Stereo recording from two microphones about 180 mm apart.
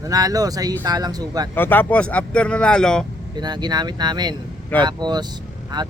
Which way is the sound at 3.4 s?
25° right (ahead or behind).